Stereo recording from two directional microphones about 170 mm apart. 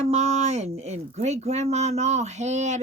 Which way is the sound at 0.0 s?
40° right (ahead or behind).